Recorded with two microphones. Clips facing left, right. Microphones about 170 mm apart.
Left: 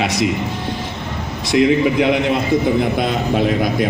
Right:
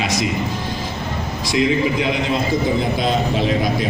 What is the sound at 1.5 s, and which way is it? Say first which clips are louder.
A man's voice: left 4 dB; 60° left (ahead or behind).